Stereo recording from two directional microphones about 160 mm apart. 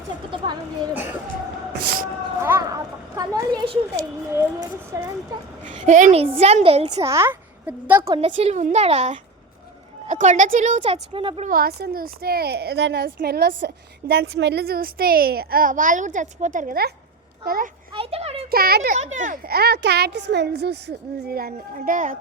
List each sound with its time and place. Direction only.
1.7 s a sound: 80° right
2.4 s a child's voice: 20° right (ahead or behind)
4.9 s a child's voice: 20° right (ahead or behind)
5.7 s a woman's voice: 50° right (ahead or behind)
6.1 s a woman's voice: 35° right (ahead or behind)
7.0 s a woman's voice: 15° right (ahead or behind)
8.1 s a woman's voice: 40° right (ahead or behind)
11.4 s a woman's voice: 70° right (ahead or behind); by 13.1 s 90° right
13.1 s a woman's voice: 80° right
17.9 s a woman's voice: 35° right (ahead or behind)
18.5 s a woman's voice: 70° right (ahead or behind)
18.9 s a woman's voice: 50° right (ahead or behind)
19.5 s speech: 85° right; by 22.2 s 55° right (ahead or behind)